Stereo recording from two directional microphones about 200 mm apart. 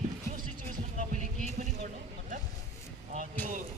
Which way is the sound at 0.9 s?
40° right (ahead or behind).